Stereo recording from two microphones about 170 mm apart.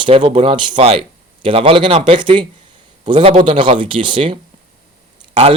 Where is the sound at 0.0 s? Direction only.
40° right (ahead or behind).